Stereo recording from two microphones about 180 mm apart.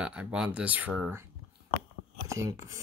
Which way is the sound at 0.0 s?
5° right (ahead or behind).